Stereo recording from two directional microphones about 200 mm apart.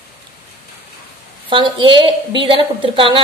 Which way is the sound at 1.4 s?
25° right (ahead or behind).